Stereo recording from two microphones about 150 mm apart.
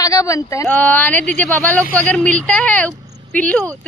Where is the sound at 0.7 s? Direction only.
10° left (ahead or behind).